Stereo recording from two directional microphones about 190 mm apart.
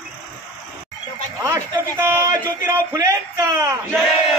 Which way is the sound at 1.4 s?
15° right (ahead or behind).